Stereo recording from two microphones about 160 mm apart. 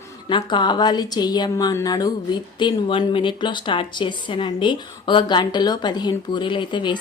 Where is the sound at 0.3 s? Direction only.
30° left (ahead or behind).